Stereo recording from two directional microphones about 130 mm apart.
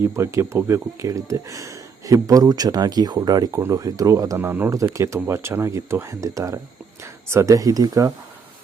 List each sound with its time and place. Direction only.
0.0 s speech: 20° right (ahead or behind)